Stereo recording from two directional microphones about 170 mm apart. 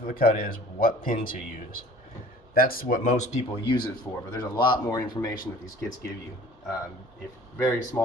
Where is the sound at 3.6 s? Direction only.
25° left (ahead or behind).